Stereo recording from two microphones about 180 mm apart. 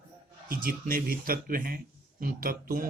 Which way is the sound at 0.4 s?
55° right (ahead or behind).